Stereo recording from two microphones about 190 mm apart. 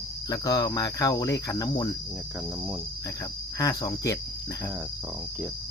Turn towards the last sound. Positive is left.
turn(degrees=20)  # may be behind; listen again after turning